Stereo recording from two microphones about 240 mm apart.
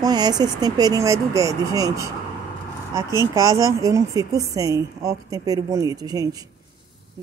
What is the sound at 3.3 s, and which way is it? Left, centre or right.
A woman's voice, centre.